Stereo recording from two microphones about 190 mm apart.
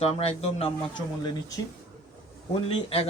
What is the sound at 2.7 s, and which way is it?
Speech, 30° left (ahead or behind).